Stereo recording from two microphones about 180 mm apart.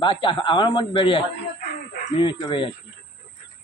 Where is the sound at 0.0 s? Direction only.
25° left (ahead or behind).